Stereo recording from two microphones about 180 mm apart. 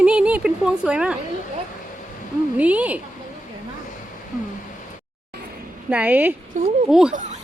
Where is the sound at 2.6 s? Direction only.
10° right (ahead or behind).